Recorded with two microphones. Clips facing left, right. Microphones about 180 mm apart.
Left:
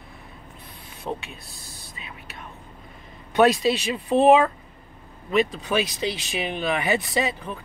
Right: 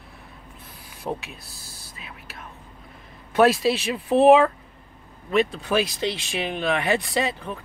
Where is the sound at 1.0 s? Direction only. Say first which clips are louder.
Right 1 dB; centre (ahead or behind).